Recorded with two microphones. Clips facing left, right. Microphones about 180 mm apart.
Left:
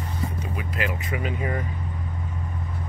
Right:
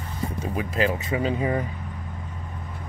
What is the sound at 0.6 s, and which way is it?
Speech, 30° right (ahead or behind).